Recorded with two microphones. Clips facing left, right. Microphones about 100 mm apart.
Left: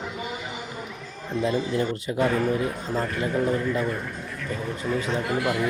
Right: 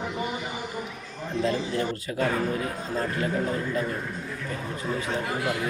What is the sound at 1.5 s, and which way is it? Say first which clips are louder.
Speech: left 3 dB; 20° left (ahead or behind).